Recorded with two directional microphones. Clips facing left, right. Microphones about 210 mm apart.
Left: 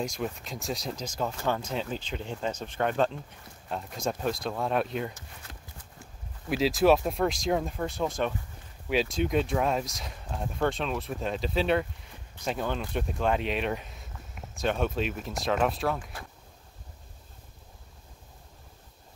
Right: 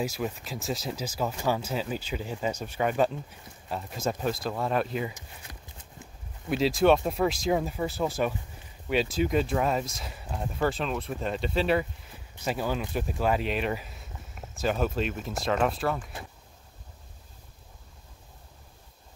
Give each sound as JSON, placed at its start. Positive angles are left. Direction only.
{"t": 0.0, "sound": "speech", "side_deg": -5}
{"t": 5.4, "sound": "clip-clop", "side_deg": -15}
{"t": 6.5, "sound": "speech", "side_deg": 0}